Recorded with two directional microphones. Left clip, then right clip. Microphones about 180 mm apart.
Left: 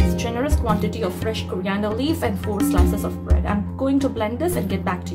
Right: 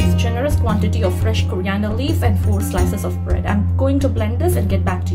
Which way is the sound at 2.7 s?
Centre (ahead or behind).